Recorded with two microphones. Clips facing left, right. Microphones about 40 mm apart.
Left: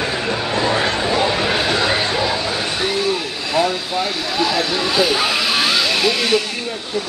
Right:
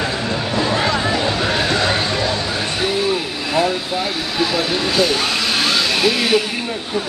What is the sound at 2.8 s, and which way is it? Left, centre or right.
Vehicle, centre.